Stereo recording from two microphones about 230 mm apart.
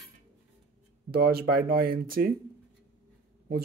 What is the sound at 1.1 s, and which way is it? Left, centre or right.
Speech, right.